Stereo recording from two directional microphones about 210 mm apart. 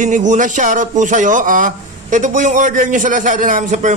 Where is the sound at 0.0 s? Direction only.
35° right (ahead or behind).